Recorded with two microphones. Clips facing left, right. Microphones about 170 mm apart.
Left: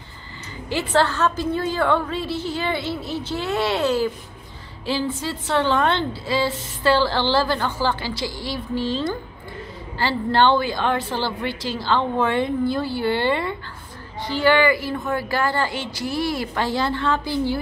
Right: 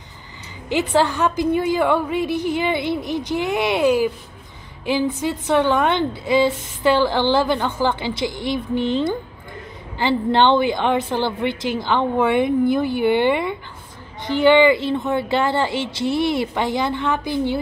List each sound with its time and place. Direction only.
0.7 s a woman's voice: 15° right (ahead or behind)